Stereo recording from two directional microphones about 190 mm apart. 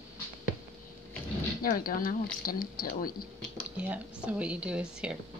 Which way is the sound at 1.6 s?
50° left (ahead or behind).